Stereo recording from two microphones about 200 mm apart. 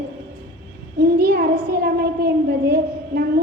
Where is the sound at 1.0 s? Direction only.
50° right (ahead or behind).